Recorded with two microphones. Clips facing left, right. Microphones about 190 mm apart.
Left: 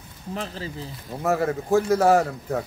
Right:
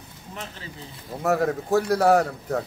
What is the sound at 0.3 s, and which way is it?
Speech, 35° left (ahead or behind).